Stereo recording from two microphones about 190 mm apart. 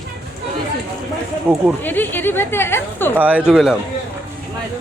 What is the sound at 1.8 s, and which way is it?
Speech, 10° left (ahead or behind).